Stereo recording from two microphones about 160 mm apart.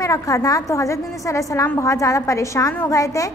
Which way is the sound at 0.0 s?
20° left (ahead or behind).